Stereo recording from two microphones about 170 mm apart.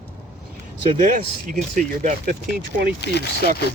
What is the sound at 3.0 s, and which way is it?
Speech, 85° left.